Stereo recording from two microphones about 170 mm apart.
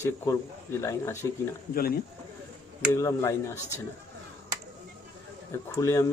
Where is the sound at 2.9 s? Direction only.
20° left (ahead or behind).